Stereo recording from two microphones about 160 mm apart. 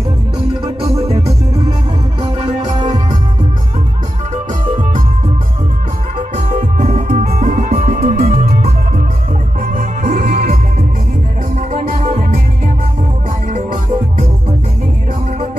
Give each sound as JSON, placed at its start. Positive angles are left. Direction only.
{"t": 2.7, "sound": "music", "side_deg": -25}
{"t": 6.1, "sound": "music", "side_deg": -45}
{"t": 11.7, "sound": "music", "side_deg": -45}